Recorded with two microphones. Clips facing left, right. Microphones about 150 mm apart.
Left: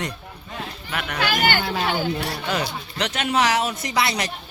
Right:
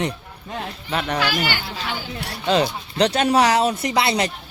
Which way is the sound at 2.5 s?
30° right (ahead or behind).